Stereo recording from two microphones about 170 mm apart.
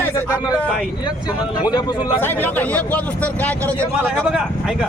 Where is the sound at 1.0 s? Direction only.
25° left (ahead or behind).